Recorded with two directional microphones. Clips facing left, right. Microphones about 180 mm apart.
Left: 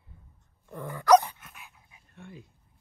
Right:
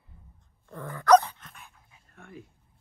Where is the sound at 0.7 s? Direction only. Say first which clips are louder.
Right 1 dB; 10° left (ahead or behind).